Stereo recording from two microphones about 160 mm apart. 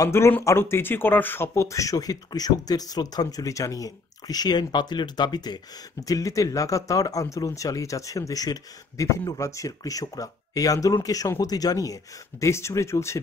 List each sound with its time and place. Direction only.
0.0 s speech: 15° left (ahead or behind)